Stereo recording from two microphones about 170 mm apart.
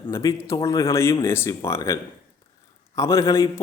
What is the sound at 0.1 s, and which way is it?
A man's voice, 20° left (ahead or behind).